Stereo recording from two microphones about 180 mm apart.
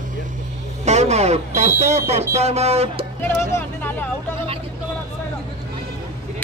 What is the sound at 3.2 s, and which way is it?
Speech, 15° left (ahead or behind).